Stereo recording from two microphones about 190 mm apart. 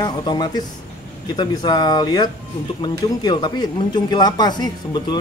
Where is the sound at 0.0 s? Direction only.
20° left (ahead or behind).